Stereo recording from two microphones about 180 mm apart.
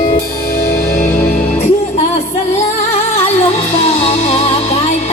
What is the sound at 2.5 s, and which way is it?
Music, 35° left (ahead or behind).